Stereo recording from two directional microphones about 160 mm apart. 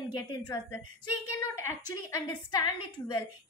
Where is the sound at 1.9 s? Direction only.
25° left (ahead or behind).